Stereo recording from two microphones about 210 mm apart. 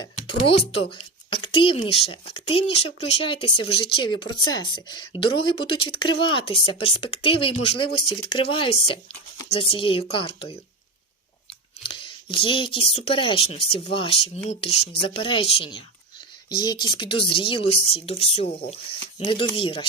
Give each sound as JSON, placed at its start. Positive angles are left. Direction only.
{"t": 0.3, "sound": "speech", "side_deg": 25}
{"t": 12.3, "sound": "speech", "side_deg": 25}